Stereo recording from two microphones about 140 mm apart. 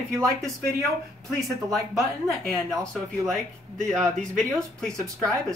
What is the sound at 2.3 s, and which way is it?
Speech, 5° left (ahead or behind).